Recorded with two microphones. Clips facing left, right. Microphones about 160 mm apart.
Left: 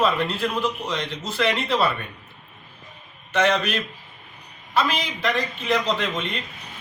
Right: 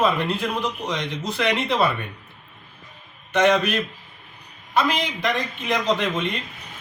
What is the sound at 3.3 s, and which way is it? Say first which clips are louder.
Speech: right 3 dB; 15° right (ahead or behind).